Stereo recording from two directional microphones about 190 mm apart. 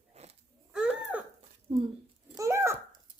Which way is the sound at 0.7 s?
5° right (ahead or behind).